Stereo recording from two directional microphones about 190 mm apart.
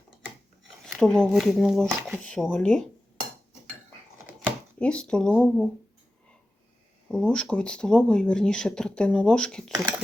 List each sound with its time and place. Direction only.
0.9 s speech: 5° left (ahead or behind)
4.8 s speech: 5° left (ahead or behind)
7.1 s speech: 5° left (ahead or behind)